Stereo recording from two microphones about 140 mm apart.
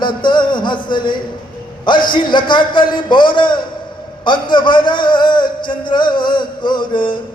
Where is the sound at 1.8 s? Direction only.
35° left (ahead or behind).